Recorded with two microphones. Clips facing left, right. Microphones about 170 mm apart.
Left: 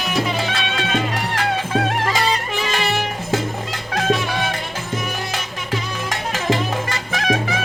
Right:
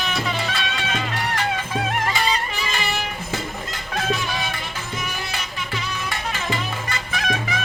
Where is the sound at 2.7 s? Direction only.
75° left (ahead or behind).